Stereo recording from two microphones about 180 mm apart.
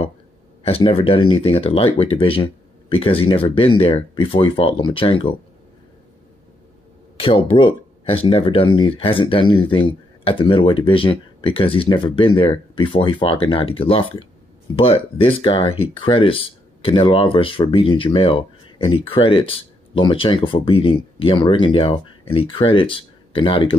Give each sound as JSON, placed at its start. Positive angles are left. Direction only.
{"t": 0.7, "sound": "speech", "side_deg": 30}
{"t": 7.2, "sound": "speech", "side_deg": 30}